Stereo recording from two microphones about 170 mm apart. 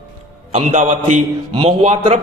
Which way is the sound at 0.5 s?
45° right (ahead or behind).